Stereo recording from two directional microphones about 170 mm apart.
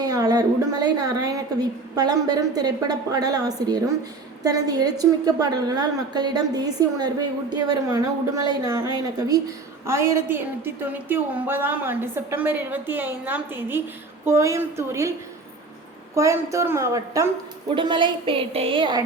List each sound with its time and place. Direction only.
0.0 s a woman's voice: 25° right (ahead or behind)
16.1 s a woman's voice: 20° right (ahead or behind)
17.7 s a woman's voice: 30° right (ahead or behind)